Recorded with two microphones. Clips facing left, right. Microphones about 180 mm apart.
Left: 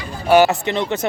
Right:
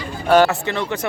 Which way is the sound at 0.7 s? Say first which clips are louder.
Left 2 dB; 20° left (ahead or behind).